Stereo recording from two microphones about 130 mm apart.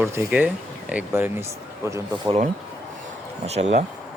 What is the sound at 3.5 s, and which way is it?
Speech, 55° right (ahead or behind).